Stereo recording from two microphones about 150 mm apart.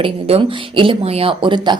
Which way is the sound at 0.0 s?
40° right (ahead or behind).